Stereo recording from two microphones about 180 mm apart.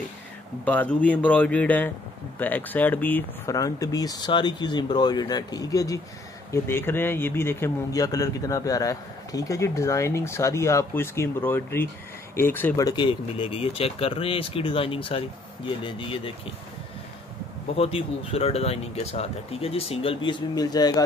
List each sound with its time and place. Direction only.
0.7 s speech: 10° left (ahead or behind); by 16.3 s 30° left (ahead or behind)
17.7 s speech: 35° left (ahead or behind)